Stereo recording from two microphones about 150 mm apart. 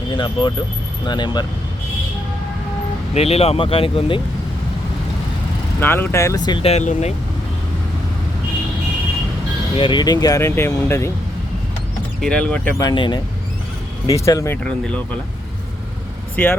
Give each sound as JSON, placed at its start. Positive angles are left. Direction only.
{"t": 0.2, "sound": "speech", "side_deg": 35}
{"t": 3.2, "sound": "speech", "side_deg": 40}
{"t": 5.8, "sound": "speech", "side_deg": 15}
{"t": 6.7, "sound": "speech", "side_deg": 50}
{"t": 9.7, "sound": "speech", "side_deg": 35}
{"t": 12.2, "sound": "speech", "side_deg": 5}
{"t": 12.8, "sound": "speech", "side_deg": 30}
{"t": 14.6, "sound": "speech", "side_deg": 5}
{"t": 16.3, "sound": "speech", "side_deg": 15}